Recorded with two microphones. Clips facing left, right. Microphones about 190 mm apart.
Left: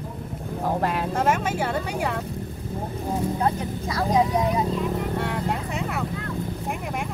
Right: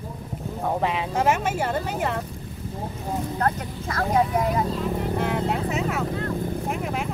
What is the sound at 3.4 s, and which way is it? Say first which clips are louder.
Speech: left 1 dB; 15° left (ahead or behind).